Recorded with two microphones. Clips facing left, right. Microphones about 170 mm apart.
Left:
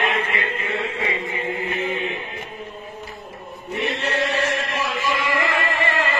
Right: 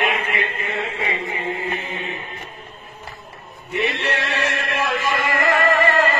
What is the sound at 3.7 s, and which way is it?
Chant, 75° right (ahead or behind).